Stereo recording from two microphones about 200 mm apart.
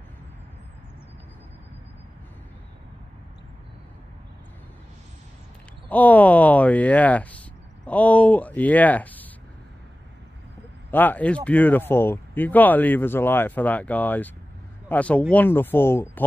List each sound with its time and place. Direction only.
5.9 s speech: 10° left (ahead or behind)
10.9 s speech: 10° left (ahead or behind)